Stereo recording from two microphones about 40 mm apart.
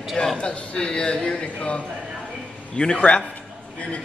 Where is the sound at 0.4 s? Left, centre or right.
Left.